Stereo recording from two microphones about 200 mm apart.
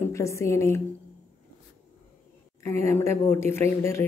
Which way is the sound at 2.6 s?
15° left (ahead or behind).